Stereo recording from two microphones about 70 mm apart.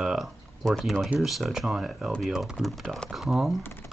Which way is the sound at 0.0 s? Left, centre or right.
Centre.